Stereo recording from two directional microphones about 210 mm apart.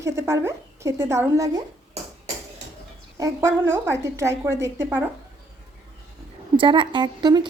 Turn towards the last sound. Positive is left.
turn(degrees=-20)  # may be behind; listen again after turning